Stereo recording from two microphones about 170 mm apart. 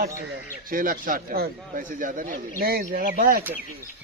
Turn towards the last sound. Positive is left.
turn(degrees=-55)  # may be behind; listen again after turning